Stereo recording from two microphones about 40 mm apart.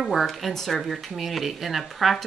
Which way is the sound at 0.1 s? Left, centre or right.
Centre.